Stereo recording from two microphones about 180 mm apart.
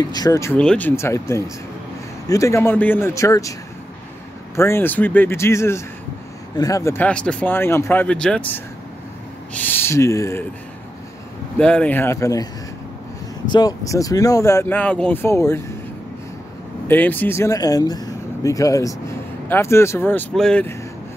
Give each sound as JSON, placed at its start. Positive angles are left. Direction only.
{"t": 0.0, "sound": "speech", "side_deg": 20}
{"t": 4.6, "sound": "speech", "side_deg": 15}
{"t": 11.5, "sound": "speech", "side_deg": 5}
{"t": 13.5, "sound": "speech", "side_deg": 20}
{"t": 16.8, "sound": "speech", "side_deg": 10}